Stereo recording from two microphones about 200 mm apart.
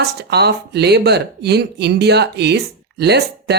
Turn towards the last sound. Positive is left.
turn(degrees=-55)  # may be behind; listen again after turning